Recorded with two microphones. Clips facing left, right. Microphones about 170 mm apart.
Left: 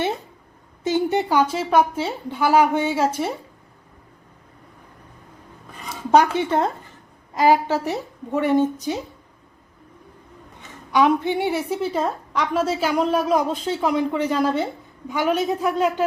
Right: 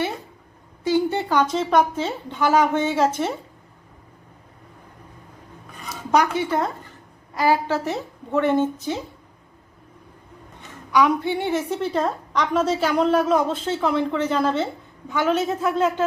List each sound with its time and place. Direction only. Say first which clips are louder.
0.9 s speech: left 1 dB; 20° left (ahead or behind)
5.9 s a sound: left 4 dB; 30° left (ahead or behind)
7.3 s speech: left 3 dB; 20° left (ahead or behind)
10.9 s speech: left 1 dB; 20° left (ahead or behind)